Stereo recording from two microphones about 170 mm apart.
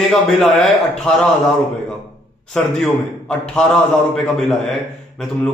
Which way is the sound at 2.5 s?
5° left (ahead or behind).